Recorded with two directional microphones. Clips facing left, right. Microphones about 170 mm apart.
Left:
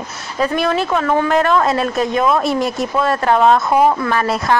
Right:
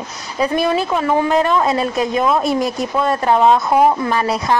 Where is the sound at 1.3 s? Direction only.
Centre (ahead or behind).